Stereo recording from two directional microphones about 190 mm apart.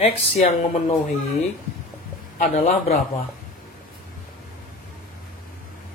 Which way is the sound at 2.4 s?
45° left (ahead or behind).